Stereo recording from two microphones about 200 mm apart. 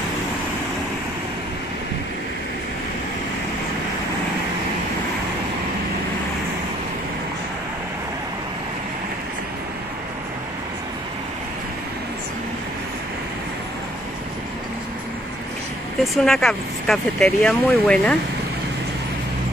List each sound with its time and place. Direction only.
16.0 s speech: centre (ahead or behind)